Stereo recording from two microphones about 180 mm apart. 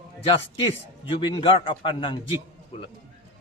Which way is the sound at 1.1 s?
30° left (ahead or behind).